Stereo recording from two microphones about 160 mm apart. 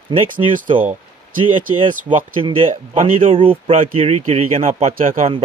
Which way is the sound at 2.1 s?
35° right (ahead or behind).